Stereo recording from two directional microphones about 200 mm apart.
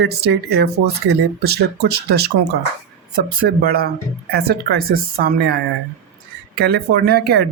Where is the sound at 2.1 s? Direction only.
55° right (ahead or behind).